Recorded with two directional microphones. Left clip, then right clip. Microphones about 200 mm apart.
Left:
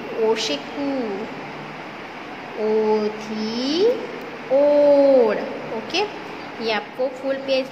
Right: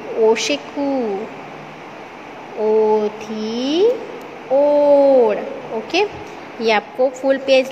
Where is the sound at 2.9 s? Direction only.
15° right (ahead or behind).